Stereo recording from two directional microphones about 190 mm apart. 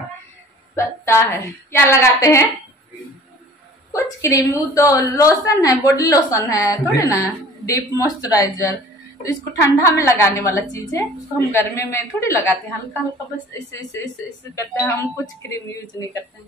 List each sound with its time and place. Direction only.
0.7 s a woman's voice: 15° left (ahead or behind)
3.9 s a woman's voice: 15° left (ahead or behind)
15.5 s a woman's voice: 15° left (ahead or behind)